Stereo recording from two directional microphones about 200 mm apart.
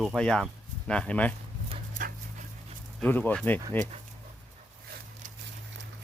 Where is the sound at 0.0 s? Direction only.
Centre (ahead or behind).